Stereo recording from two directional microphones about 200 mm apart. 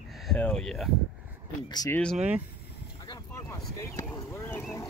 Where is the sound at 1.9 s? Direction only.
5° left (ahead or behind).